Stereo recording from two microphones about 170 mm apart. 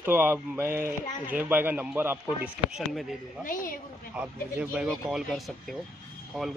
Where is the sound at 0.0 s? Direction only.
10° right (ahead or behind).